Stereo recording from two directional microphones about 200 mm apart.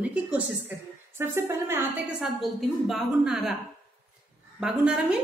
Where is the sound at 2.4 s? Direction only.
Centre (ahead or behind).